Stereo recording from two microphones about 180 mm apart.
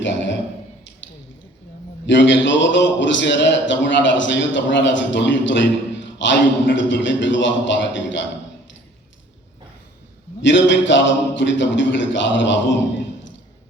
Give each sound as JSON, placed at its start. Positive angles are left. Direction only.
{"t": 0.0, "sound": "a man's voice", "side_deg": 90}
{"t": 2.0, "sound": "a man's voice", "side_deg": 90}
{"t": 10.4, "sound": "a man's voice", "side_deg": 90}